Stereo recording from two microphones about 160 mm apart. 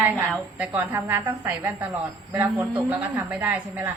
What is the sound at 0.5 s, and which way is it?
Speech, 10° right (ahead or behind).